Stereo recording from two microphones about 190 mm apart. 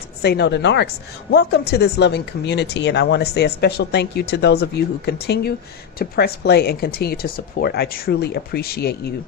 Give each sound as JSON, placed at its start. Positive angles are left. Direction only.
{"t": 0.2, "sound": "speech", "side_deg": 60}